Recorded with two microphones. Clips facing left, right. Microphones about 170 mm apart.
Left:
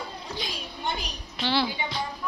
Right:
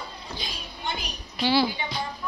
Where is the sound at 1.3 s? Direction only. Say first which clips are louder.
Right 4 dB; 5° right (ahead or behind).